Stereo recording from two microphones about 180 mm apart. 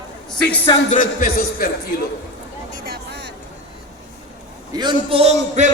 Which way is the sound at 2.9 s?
70° right (ahead or behind).